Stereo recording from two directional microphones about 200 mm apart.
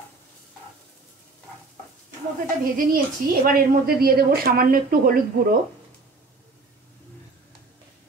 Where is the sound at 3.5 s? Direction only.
50° right (ahead or behind).